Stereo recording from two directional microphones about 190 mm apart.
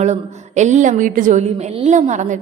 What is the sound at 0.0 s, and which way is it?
A woman's voice, 35° right (ahead or behind).